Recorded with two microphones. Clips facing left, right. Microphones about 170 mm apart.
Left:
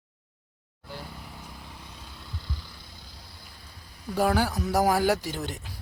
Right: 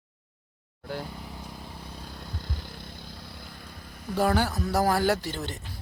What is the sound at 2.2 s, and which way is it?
Vehicle, 50° right (ahead or behind).